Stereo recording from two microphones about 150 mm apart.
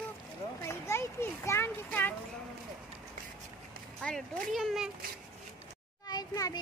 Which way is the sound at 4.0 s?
5° left (ahead or behind).